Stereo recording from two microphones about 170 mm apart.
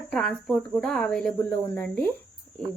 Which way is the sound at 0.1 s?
5° left (ahead or behind).